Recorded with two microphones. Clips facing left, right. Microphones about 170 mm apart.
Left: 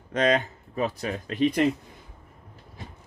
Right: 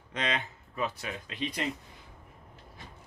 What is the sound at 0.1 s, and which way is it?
Speech, 45° left (ahead or behind).